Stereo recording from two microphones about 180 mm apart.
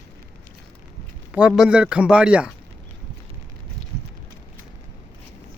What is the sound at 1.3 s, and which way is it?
Speech, 5° right (ahead or behind).